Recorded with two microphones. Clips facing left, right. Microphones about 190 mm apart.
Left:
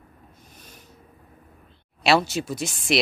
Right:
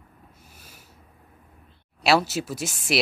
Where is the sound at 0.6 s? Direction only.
5° right (ahead or behind).